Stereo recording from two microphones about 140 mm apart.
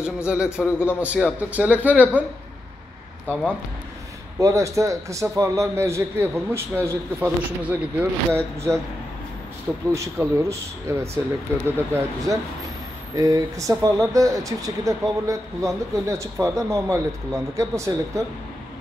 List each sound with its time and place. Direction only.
0.0 s speech: 5° right (ahead or behind)
4.4 s speech: 20° right (ahead or behind)
9.9 s speech: 20° right (ahead or behind)